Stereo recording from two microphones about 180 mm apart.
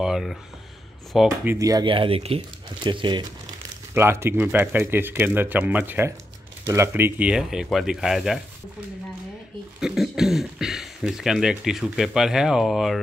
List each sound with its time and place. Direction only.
0.0 s a sound: centre (ahead or behind)
1.1 s speech: 5° right (ahead or behind); by 3.3 s 25° right (ahead or behind)
3.9 s speech: 15° right (ahead or behind)
9.8 s speech: 5° right (ahead or behind)